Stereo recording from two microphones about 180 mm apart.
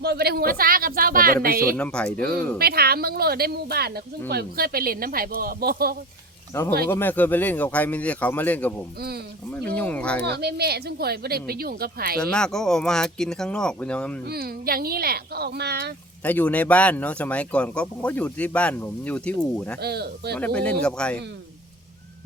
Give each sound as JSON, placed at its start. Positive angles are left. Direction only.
{"t": 0.0, "sound": "a woman's voice", "side_deg": -65}
{"t": 1.7, "sound": "speech", "side_deg": 5}
{"t": 2.2, "sound": "a woman's voice", "side_deg": -60}
{"t": 6.8, "sound": "speech", "side_deg": 10}
{"t": 9.0, "sound": "a woman's voice", "side_deg": -60}
{"t": 9.6, "sound": "speech", "side_deg": 10}
{"t": 10.2, "sound": "a woman's voice", "side_deg": -65}
{"t": 12.2, "sound": "speech", "side_deg": 5}
{"t": 14.3, "sound": "a woman's voice", "side_deg": -60}
{"t": 16.2, "sound": "speech", "side_deg": 10}
{"t": 19.8, "sound": "a woman's voice", "side_deg": -65}
{"t": 20.4, "sound": "speech", "side_deg": 5}